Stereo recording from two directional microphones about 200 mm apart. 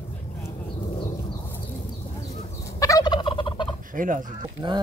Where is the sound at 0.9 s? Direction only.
20° left (ahead or behind).